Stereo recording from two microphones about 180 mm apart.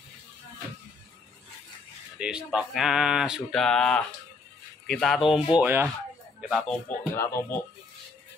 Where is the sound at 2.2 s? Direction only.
5° right (ahead or behind); by 7.5 s 10° left (ahead or behind).